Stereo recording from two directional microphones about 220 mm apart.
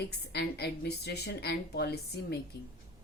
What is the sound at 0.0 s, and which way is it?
Speech, 45° left (ahead or behind).